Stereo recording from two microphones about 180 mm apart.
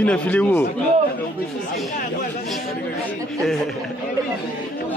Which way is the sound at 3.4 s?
Centre (ahead or behind).